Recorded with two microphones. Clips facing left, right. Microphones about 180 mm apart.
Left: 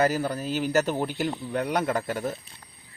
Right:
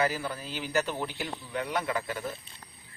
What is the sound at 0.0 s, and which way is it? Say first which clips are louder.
Speech: left 6 dB; 45° left (ahead or behind).